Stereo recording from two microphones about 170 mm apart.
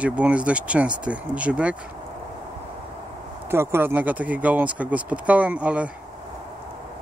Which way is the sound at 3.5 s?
15° right (ahead or behind).